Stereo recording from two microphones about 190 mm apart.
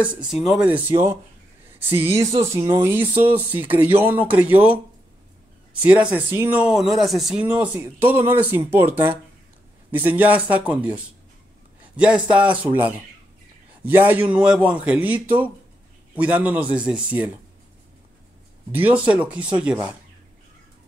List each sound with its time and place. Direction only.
0.5 s speech: 5° right (ahead or behind)
12.0 s speech: 5° right (ahead or behind)
18.7 s speech: 10° right (ahead or behind)